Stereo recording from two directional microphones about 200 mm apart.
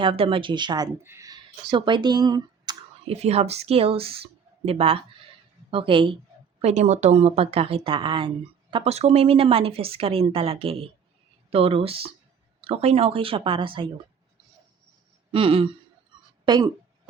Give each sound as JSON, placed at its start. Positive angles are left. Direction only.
{"t": 0.0, "sound": "speech", "side_deg": -25}
{"t": 3.1, "sound": "speech", "side_deg": -30}
{"t": 15.3, "sound": "speech", "side_deg": -25}
{"t": 16.1, "sound": "a sound", "side_deg": -20}
{"t": 16.5, "sound": "speech", "side_deg": -20}